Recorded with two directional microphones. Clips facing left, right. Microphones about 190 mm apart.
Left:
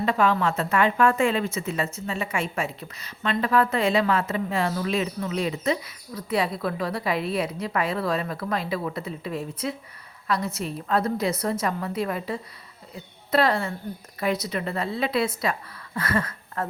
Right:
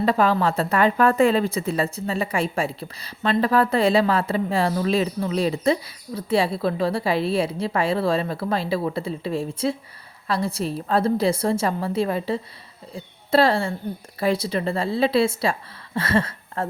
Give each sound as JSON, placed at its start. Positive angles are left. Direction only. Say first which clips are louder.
{"t": 0.0, "sound": "a woman's voice", "louder": "right 3 dB", "side_deg": -35}